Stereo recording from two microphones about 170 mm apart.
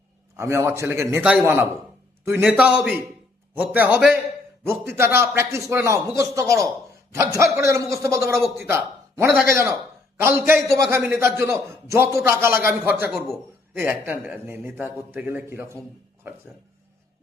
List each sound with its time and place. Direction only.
0.3 s a man's voice: 15° right (ahead or behind)